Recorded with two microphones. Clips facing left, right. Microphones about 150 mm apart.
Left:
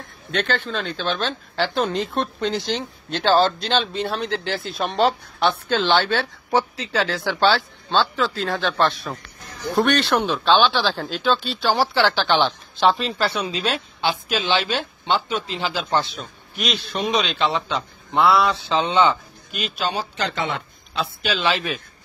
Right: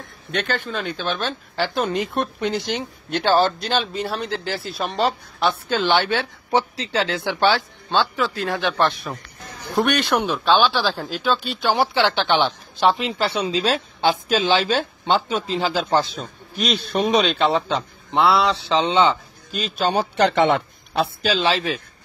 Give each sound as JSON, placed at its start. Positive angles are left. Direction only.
{"t": 0.4, "sound": "speech", "side_deg": -10}
{"t": 12.4, "sound": "speech", "side_deg": -5}
{"t": 12.9, "sound": "speech", "side_deg": -20}
{"t": 14.0, "sound": "speech", "side_deg": -45}
{"t": 18.1, "sound": "speech", "side_deg": -20}
{"t": 19.5, "sound": "speech", "side_deg": -45}
{"t": 20.2, "sound": "speech", "side_deg": -65}
{"t": 21.2, "sound": "speech", "side_deg": -35}